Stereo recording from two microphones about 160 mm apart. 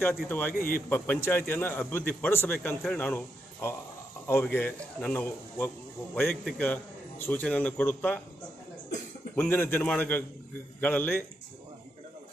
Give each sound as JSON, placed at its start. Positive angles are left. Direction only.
{"t": 0.0, "sound": "speech", "side_deg": 10}
{"t": 0.6, "sound": "a man's voice", "side_deg": 65}
{"t": 0.8, "sound": "speech", "side_deg": 10}
{"t": 9.3, "sound": "speech", "side_deg": 10}